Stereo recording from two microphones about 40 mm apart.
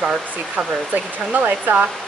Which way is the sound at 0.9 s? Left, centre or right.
Right.